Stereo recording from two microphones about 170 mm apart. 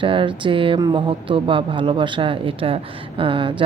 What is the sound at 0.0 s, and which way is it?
A woman's voice, 30° right (ahead or behind).